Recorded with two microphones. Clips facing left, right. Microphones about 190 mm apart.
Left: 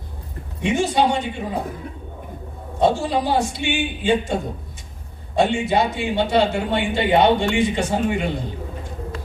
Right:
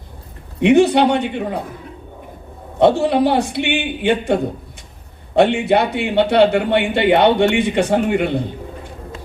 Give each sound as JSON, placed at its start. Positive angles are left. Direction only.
{"t": 0.6, "sound": "a man's voice", "side_deg": -65}
{"t": 2.7, "sound": "a man's voice", "side_deg": -65}